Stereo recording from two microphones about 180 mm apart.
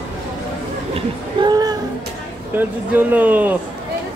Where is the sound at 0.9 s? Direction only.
25° right (ahead or behind).